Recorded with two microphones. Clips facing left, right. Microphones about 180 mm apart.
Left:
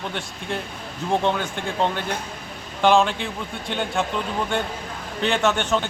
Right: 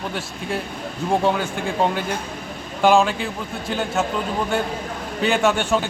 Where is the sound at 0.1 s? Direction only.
5° right (ahead or behind).